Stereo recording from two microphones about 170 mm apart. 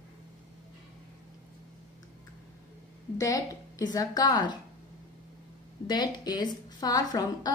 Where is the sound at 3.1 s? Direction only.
20° left (ahead or behind).